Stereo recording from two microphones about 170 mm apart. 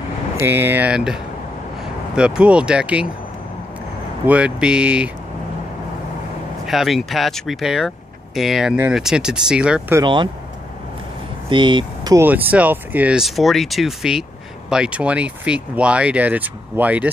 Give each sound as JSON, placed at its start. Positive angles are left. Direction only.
{"t": 0.4, "sound": "speech", "side_deg": -10}
{"t": 4.3, "sound": "speech", "side_deg": -5}
{"t": 6.6, "sound": "speech", "side_deg": 0}
{"t": 9.9, "sound": "speech", "side_deg": -25}
{"t": 11.4, "sound": "speech", "side_deg": -30}
{"t": 12.3, "sound": "speech", "side_deg": -10}